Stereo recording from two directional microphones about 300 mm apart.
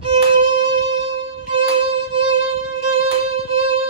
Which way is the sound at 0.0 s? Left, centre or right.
Centre.